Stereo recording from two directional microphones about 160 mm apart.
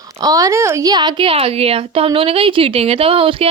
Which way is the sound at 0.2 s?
25° right (ahead or behind).